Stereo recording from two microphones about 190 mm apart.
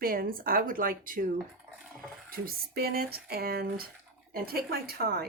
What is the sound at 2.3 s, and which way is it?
Speech, 50° right (ahead or behind).